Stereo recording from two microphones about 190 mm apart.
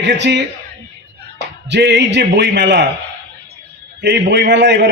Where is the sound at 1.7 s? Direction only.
60° right (ahead or behind).